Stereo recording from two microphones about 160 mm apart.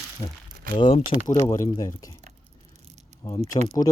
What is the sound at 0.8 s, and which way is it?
Speech, 35° left (ahead or behind).